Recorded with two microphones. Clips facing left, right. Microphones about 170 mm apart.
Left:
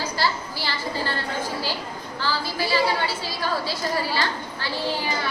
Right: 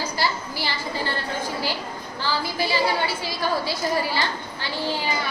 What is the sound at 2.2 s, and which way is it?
A woman's voice, 15° right (ahead or behind).